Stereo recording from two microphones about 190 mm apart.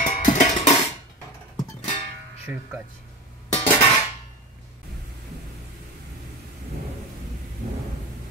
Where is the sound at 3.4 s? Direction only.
35° left (ahead or behind).